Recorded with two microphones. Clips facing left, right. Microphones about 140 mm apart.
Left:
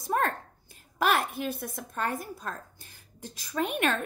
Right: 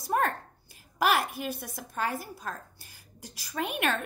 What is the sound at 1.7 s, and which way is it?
A woman's voice, 5° right (ahead or behind).